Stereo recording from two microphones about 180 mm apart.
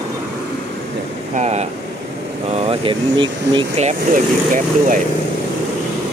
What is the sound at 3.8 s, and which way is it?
Speech, 45° right (ahead or behind).